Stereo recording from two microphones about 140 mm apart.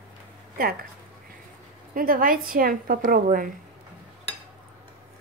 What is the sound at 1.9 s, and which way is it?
A woman's voice, 90° right.